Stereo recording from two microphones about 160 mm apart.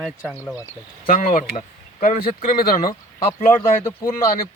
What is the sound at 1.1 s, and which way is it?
Speech, 60° left (ahead or behind).